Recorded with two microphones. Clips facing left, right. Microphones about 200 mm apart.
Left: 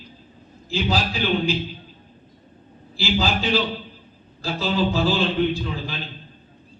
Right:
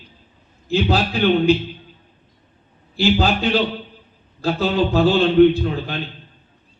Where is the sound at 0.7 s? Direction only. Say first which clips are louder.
Right 5 dB; 60° right (ahead or behind).